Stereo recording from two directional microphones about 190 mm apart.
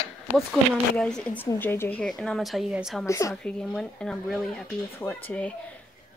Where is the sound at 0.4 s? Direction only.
Centre (ahead or behind).